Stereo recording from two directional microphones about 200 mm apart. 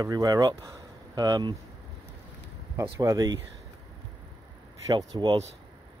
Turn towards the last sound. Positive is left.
turn(degrees=-20)  # may be behind; listen again after turning